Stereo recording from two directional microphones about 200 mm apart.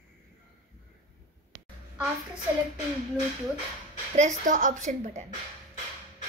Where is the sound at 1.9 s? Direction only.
5° right (ahead or behind).